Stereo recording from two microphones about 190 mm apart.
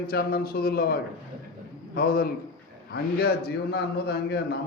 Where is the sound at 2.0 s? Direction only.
55° left (ahead or behind).